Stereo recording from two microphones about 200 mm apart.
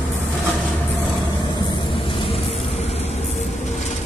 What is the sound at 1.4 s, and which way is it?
Vehicle, 25° left (ahead or behind).